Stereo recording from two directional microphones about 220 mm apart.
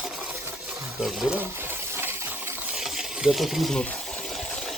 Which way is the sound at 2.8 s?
Centre (ahead or behind).